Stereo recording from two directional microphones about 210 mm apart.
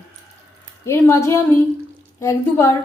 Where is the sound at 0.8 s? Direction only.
15° left (ahead or behind).